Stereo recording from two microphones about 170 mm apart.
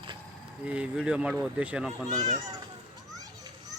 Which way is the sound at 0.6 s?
10° right (ahead or behind).